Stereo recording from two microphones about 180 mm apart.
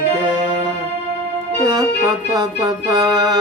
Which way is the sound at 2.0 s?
20° right (ahead or behind).